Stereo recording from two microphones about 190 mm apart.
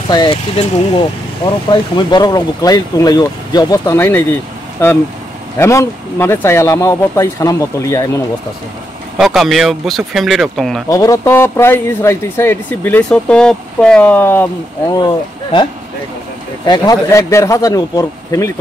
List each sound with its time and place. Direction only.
0.1 s a man's voice: 25° left (ahead or behind)
9.2 s speech: centre (ahead or behind)
10.9 s a man's voice: 15° left (ahead or behind)
15.0 s a man's voice: 25° left (ahead or behind)